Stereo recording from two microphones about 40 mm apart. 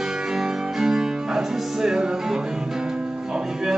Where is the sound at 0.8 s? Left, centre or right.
Centre.